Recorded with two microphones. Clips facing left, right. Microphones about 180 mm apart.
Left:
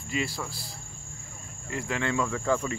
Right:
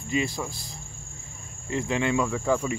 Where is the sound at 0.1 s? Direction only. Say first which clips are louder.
Right 4 dB; 20° right (ahead or behind).